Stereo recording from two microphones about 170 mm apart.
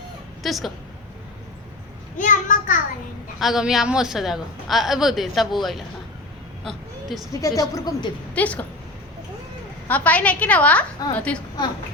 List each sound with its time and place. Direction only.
0.4 s a woman's voice: centre (ahead or behind)
2.1 s a child's voice: 50° left (ahead or behind)
3.4 s a woman's voice: centre (ahead or behind)
6.7 s a sound: centre (ahead or behind)
7.4 s a woman's voice: 20° left (ahead or behind)
8.4 s a woman's voice: 10° left (ahead or behind)
9.9 s a woman's voice: 10° left (ahead or behind)